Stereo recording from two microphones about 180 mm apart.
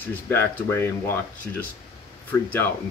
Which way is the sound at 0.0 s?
10° left (ahead or behind).